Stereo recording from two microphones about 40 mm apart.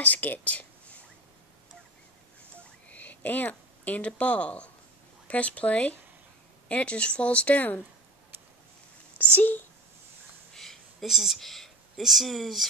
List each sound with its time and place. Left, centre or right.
0.0 s speech: left
2.9 s speech: left
9.2 s speech: left
10.5 s a sound: centre
11.1 s speech: centre
11.4 s speech: centre